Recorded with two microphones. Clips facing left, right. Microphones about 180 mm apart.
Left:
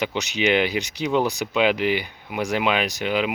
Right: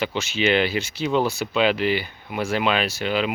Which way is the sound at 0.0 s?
15° left (ahead or behind).